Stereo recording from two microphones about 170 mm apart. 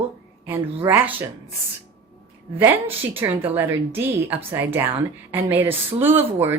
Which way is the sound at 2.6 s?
10° right (ahead or behind).